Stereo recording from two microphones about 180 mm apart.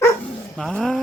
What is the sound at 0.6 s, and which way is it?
Speech, 5° left (ahead or behind).